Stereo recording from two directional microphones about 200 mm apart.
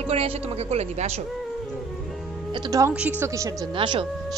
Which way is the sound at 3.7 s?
25° right (ahead or behind).